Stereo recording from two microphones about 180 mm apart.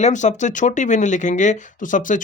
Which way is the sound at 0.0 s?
40° left (ahead or behind).